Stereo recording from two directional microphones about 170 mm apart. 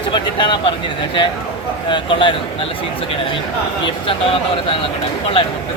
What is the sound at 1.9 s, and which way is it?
Speech, 30° left (ahead or behind).